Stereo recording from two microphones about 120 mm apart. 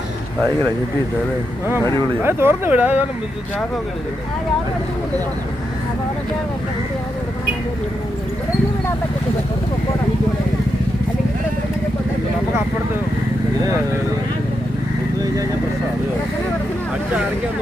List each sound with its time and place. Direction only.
1.8 s speech: 20° left (ahead or behind)
2.2 s speech: 20° right (ahead or behind)